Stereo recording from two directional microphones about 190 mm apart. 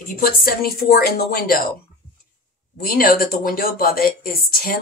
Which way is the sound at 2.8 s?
50° left (ahead or behind).